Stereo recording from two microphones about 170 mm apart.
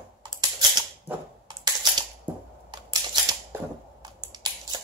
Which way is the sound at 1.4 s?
25° right (ahead or behind).